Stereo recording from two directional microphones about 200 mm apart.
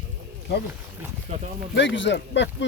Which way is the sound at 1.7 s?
60° left (ahead or behind).